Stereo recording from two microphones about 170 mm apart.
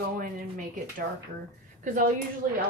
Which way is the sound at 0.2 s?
50° right (ahead or behind).